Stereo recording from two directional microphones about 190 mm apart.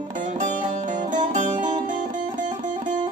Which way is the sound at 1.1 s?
40° right (ahead or behind).